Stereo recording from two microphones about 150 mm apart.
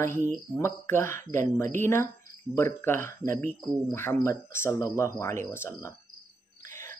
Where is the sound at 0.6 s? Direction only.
15° left (ahead or behind).